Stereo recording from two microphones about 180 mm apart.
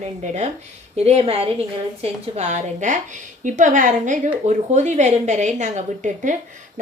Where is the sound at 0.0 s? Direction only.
40° right (ahead or behind).